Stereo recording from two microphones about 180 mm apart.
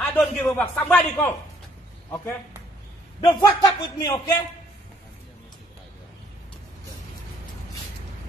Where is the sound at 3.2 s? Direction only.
20° left (ahead or behind).